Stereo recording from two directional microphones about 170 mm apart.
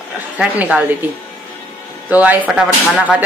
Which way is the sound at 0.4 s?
5° right (ahead or behind).